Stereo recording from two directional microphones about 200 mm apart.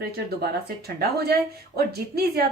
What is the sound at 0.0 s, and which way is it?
Speech, 55° right (ahead or behind).